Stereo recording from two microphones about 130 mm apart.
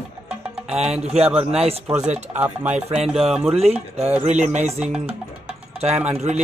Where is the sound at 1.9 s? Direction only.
60° right (ahead or behind).